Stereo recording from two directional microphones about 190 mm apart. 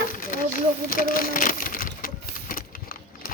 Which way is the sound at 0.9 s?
50° left (ahead or behind).